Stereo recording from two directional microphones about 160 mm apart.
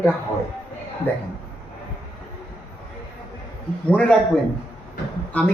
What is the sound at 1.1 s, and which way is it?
Speech, 15° left (ahead or behind).